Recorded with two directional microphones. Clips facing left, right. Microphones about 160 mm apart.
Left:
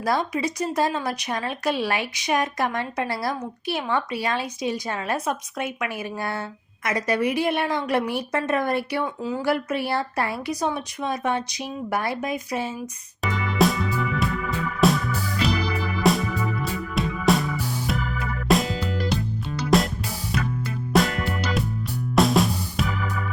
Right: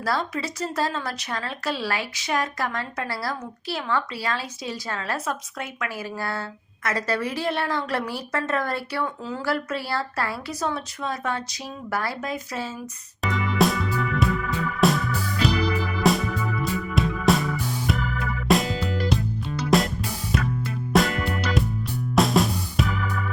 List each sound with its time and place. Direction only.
0.0 s a woman's voice: 15° left (ahead or behind)
13.2 s music: centre (ahead or behind)